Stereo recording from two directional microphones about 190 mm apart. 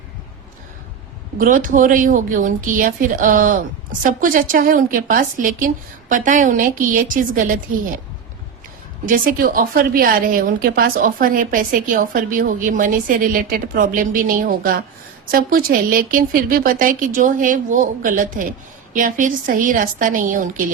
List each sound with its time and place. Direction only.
1.4 s a woman's voice: 45° right (ahead or behind)
9.0 s a woman's voice: 45° right (ahead or behind)